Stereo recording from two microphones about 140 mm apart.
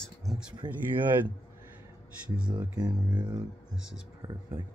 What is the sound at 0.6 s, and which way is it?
Speech, 30° right (ahead or behind).